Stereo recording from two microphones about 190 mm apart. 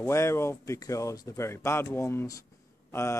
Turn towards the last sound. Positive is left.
turn(degrees=15)  # may be behind; listen again after turning